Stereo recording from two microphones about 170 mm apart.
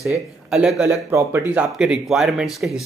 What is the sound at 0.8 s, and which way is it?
A man's voice, 15° right (ahead or behind).